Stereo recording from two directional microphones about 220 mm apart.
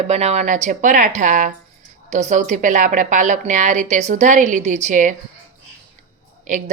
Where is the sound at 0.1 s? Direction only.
30° right (ahead or behind).